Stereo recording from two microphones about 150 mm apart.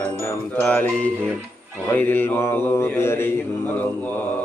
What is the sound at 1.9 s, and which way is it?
Speech, 10° left (ahead or behind).